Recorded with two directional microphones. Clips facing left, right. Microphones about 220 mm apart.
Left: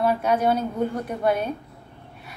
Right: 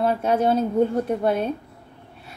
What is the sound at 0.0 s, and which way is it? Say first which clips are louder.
A woman's voice: right 1 dB; 25° right (ahead or behind).